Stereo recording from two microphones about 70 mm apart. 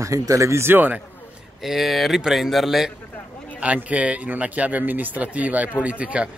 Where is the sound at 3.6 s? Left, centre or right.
Centre.